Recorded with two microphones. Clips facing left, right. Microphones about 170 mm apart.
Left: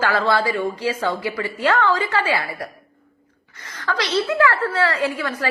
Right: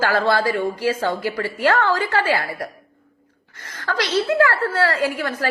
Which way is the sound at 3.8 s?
50° right (ahead or behind).